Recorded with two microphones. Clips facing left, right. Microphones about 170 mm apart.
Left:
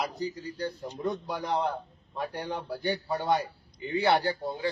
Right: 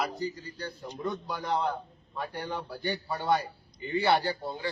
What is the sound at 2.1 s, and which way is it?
A man's voice, 15° left (ahead or behind).